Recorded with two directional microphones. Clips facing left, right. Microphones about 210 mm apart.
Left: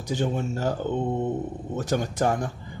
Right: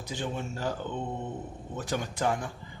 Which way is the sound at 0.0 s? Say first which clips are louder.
Left 8 dB; 45° left (ahead or behind).